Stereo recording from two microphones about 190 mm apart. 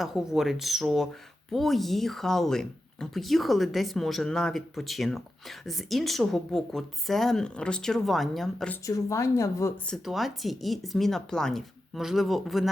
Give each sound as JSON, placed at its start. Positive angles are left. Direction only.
{"t": 0.0, "sound": "speech", "side_deg": 0}
{"t": 8.8, "sound": "a woman's voice", "side_deg": 15}
{"t": 9.8, "sound": "speech", "side_deg": 0}